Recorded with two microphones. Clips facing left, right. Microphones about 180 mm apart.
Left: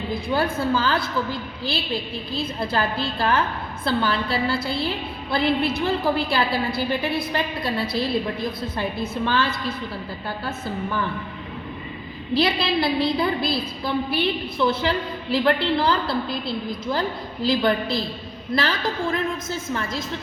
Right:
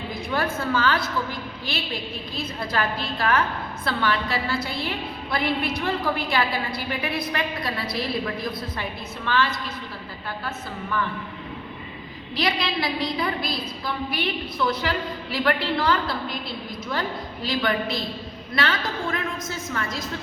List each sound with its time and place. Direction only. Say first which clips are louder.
0.1 s a woman's voice: left 3 dB; 30° left (ahead or behind)
12.3 s a woman's voice: left 5 dB; 30° left (ahead or behind)